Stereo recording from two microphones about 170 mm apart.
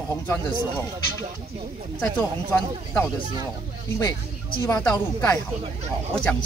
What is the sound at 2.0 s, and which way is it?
Speech, 10° left (ahead or behind).